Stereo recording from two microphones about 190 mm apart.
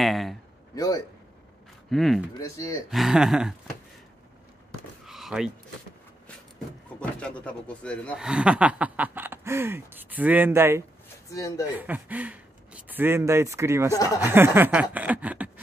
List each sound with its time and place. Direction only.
0.0 s speech: centre (ahead or behind)
0.7 s a man's voice: 20° left (ahead or behind)
1.9 s speech: centre (ahead or behind)
2.3 s speech: 15° left (ahead or behind)
2.9 s speech: centre (ahead or behind)
5.0 s a sound: centre (ahead or behind)
7.0 s speech: 5° left (ahead or behind)
8.3 s a sound: 5° right (ahead or behind)
11.2 s speech: 15° left (ahead or behind)
11.7 s a sound: 10° right (ahead or behind)
13.9 s speech: 15° left (ahead or behind)
14.2 s a sound: 10° right (ahead or behind)